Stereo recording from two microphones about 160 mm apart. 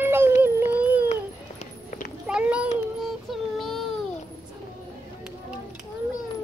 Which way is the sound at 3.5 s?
Centre (ahead or behind).